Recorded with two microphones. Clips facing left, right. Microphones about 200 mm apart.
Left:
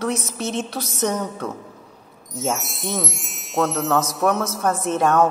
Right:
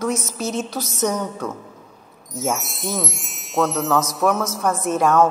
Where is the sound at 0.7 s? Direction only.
60° left (ahead or behind).